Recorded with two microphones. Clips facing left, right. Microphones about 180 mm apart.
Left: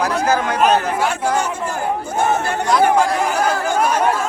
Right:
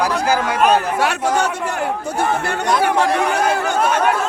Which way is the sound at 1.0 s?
70° right (ahead or behind).